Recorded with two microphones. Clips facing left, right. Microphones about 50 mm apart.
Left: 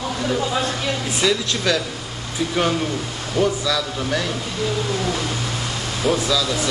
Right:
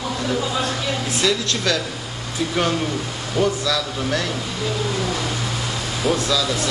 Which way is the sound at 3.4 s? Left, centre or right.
Centre.